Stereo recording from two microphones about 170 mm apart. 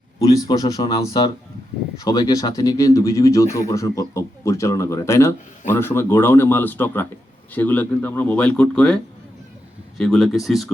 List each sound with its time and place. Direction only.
0.4 s speech: 20° left (ahead or behind); by 9.0 s 5° left (ahead or behind)
10.0 s speech: centre (ahead or behind)